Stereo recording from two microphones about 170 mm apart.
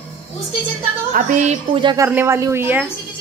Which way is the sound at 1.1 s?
45° right (ahead or behind).